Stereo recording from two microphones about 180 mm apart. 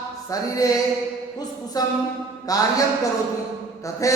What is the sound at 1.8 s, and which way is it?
Speech, 20° left (ahead or behind).